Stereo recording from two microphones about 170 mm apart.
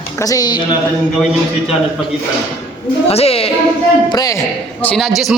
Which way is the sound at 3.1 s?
35° left (ahead or behind).